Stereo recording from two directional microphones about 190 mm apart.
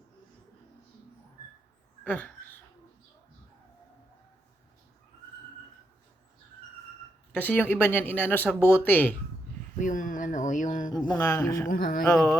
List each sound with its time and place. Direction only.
2.0 s speech: 5° left (ahead or behind)
7.3 s speech: 10° left (ahead or behind)
9.7 s speech: 45° left (ahead or behind)
11.1 s speech: 10° left (ahead or behind)
11.7 s speech: 50° left (ahead or behind)
12.0 s speech: 15° left (ahead or behind)